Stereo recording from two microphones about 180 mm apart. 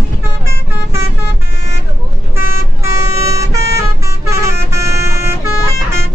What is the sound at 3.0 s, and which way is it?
Vehicle, 15° right (ahead or behind).